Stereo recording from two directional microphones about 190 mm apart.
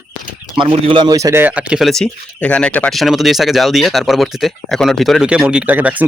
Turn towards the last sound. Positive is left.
turn(degrees=-10)  # may be behind; listen again after turning